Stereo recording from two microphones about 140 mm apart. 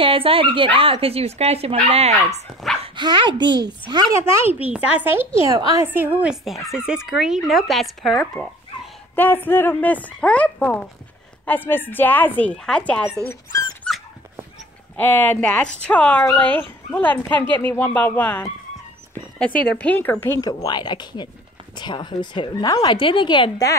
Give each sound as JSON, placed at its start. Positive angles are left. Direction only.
{"t": 0.0, "sound": "speech", "side_deg": -40}
{"t": 2.8, "sound": "a woman's voice", "side_deg": -35}
{"t": 4.2, "sound": "a child's voice", "side_deg": -15}
{"t": 5.5, "sound": "a woman's voice", "side_deg": -25}
{"t": 5.9, "sound": "speech", "side_deg": -15}
{"t": 9.1, "sound": "speech", "side_deg": 15}
{"t": 15.0, "sound": "speech", "side_deg": 15}
{"t": 19.8, "sound": "speech", "side_deg": 10}
{"t": 20.3, "sound": "a woman's voice", "side_deg": 30}